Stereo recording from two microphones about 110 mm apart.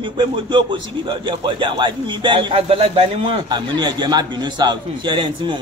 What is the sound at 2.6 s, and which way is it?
A man's voice, 60° right (ahead or behind).